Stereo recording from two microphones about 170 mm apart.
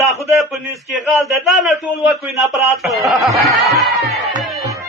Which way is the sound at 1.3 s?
Centre (ahead or behind).